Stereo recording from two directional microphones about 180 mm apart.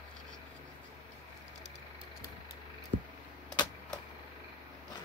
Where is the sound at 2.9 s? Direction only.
45° right (ahead or behind).